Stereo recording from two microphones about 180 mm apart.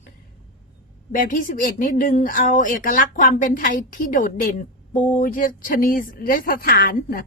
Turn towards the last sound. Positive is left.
turn(degrees=50)  # may be behind; listen again after turning